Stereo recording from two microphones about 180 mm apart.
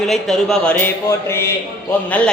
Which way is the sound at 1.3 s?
15° left (ahead or behind).